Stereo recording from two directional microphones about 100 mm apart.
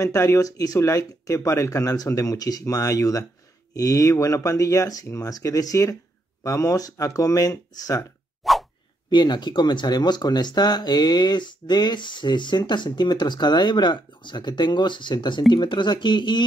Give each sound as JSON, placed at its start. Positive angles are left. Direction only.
{"t": 0.0, "sound": "speech", "side_deg": 30}
{"t": 8.4, "sound": "a sound", "side_deg": 0}
{"t": 9.1, "sound": "speech", "side_deg": 45}